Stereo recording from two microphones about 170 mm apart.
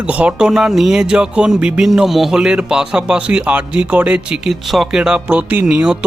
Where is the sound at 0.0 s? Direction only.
10° right (ahead or behind).